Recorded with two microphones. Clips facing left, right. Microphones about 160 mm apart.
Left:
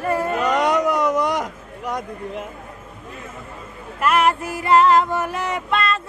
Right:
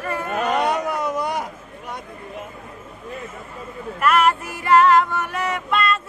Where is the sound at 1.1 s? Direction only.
90° left.